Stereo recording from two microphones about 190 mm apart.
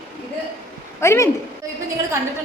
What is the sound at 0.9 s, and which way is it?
Speech, 15° left (ahead or behind).